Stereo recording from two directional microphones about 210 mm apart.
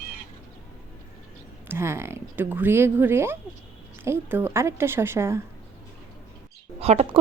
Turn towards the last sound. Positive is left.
turn(degrees=-30)  # may be behind; listen again after turning